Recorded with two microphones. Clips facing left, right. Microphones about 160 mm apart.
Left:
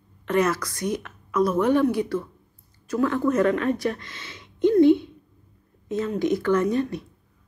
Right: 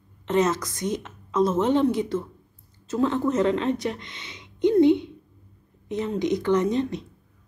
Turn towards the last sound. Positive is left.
turn(degrees=-20)  # may be behind; listen again after turning